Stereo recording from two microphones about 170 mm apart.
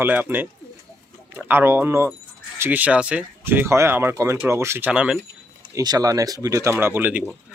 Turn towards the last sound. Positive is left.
turn(degrees=-10)  # may be behind; listen again after turning